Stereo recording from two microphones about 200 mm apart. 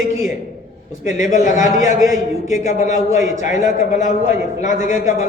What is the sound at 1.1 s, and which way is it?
Speech, 40° left (ahead or behind).